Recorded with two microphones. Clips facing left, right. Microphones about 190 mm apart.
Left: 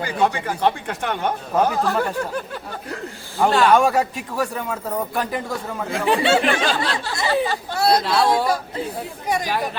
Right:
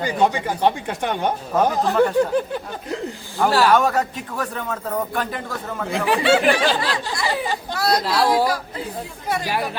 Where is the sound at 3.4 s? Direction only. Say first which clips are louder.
Left 1 dB; 5° right (ahead or behind).